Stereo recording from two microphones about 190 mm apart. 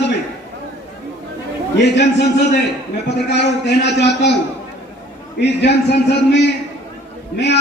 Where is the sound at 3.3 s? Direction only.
65° left (ahead or behind).